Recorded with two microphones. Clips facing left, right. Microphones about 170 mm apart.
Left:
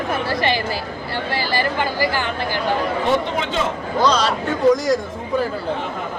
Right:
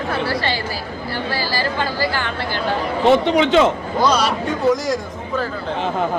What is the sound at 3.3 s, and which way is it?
Speech, 85° right.